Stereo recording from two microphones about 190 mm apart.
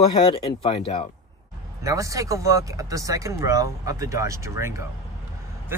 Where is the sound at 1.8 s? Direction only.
15° right (ahead or behind).